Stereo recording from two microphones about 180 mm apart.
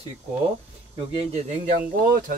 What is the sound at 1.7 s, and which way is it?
Speech, 50° right (ahead or behind).